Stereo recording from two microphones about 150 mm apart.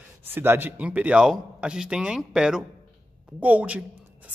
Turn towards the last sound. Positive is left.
turn(degrees=-10)  # may be behind; listen again after turning